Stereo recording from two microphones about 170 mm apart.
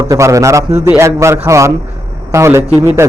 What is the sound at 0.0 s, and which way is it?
A man's voice, 20° right (ahead or behind).